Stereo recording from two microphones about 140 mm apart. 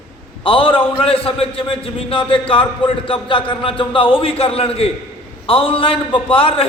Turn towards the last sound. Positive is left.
turn(degrees=40)  # may be behind; listen again after turning